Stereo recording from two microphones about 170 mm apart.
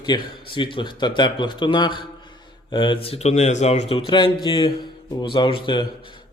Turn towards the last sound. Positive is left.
turn(degrees=30)  # may be behind; listen again after turning